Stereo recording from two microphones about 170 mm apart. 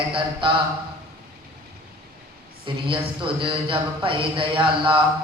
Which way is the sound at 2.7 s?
30° right (ahead or behind).